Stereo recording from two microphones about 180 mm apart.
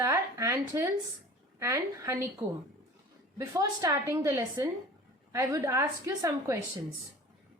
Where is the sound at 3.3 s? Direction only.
20° right (ahead or behind).